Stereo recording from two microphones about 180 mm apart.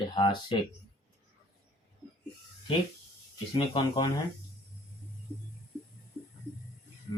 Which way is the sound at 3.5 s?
25° left (ahead or behind).